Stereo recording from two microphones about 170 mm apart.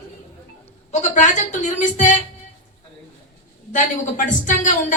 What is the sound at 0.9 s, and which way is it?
Speech, 45° left (ahead or behind).